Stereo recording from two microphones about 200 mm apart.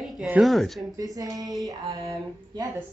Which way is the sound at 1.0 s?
20° right (ahead or behind).